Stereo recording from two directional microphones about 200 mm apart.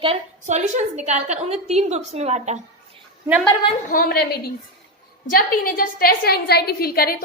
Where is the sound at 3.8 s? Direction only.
45° left (ahead or behind).